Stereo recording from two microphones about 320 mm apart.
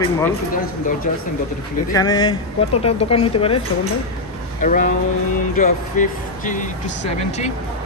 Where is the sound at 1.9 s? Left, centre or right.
Centre.